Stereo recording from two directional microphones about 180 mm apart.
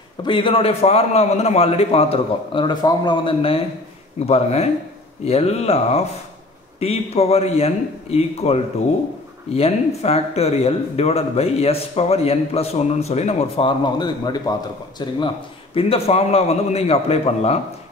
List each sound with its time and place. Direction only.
0.2 s a man's voice: 30° left (ahead or behind)
9.6 s a man's voice: 35° left (ahead or behind)